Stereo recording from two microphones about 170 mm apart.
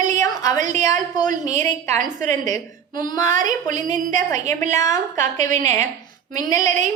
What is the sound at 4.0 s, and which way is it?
Speech, 50° right (ahead or behind).